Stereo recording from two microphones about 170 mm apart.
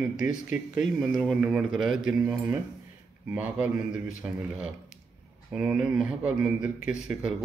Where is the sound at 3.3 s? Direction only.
10° right (ahead or behind).